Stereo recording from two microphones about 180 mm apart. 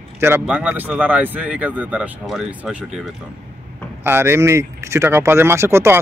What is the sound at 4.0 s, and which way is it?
Speech, 15° right (ahead or behind).